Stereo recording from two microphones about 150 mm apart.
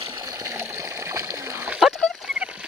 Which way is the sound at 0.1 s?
25° right (ahead or behind).